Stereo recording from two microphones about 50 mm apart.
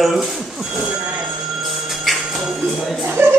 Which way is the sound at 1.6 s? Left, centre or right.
Centre.